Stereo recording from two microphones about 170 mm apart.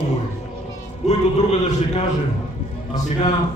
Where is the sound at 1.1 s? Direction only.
40° left (ahead or behind).